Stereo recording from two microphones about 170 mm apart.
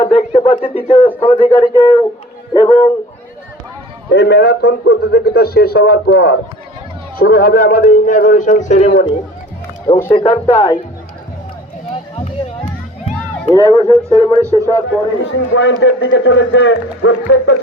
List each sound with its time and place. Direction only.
0.0 s a sound: 35° left (ahead or behind)
0.8 s speech: 30° left (ahead or behind)
4.1 s a man's voice: 75° left (ahead or behind); by 9.0 s 40° left (ahead or behind)
10.2 s speech: 35° left (ahead or behind)
13.5 s speech: 20° left (ahead or behind)
14.8 s a man's voice: 90° left